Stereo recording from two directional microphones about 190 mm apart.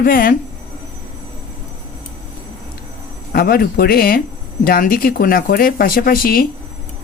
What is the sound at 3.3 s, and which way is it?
Speech, 50° left (ahead or behind).